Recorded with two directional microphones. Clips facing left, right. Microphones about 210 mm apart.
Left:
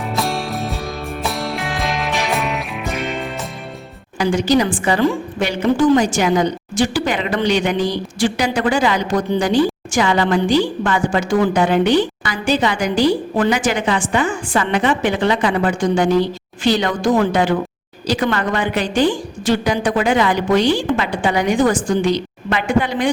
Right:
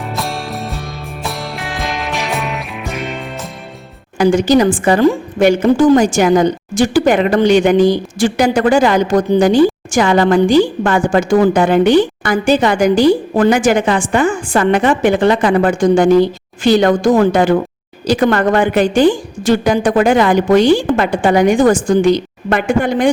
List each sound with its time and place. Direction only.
0.1 s music: centre (ahead or behind)
4.2 s a woman's voice: 50° right (ahead or behind)